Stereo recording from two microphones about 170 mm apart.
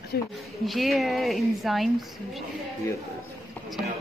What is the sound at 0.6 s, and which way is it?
A woman's voice, centre (ahead or behind).